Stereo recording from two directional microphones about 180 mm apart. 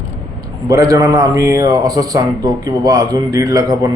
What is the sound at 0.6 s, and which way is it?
A man's voice, 20° right (ahead or behind).